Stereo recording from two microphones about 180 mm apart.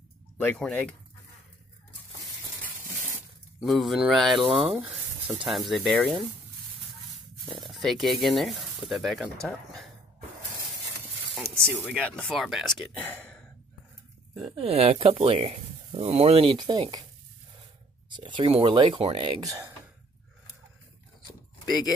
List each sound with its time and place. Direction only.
0.4 s speech: 10° left (ahead or behind)
3.6 s speech: centre (ahead or behind)
4.6 s a sound: 10° right (ahead or behind)
5.4 s speech: centre (ahead or behind)
7.4 s speech: centre (ahead or behind)
11.4 s spray: 5° left (ahead or behind)
11.9 s speech: 5° left (ahead or behind)
14.4 s speech: 30° right (ahead or behind)
18.1 s speech: 25° right (ahead or behind)